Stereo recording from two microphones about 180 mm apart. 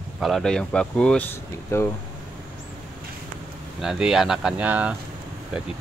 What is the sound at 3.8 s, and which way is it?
Speech, 5° right (ahead or behind).